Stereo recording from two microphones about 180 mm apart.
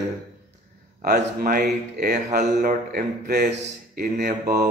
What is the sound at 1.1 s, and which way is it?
Speech, 50° right (ahead or behind).